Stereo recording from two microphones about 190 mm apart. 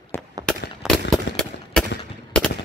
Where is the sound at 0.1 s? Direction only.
10° left (ahead or behind).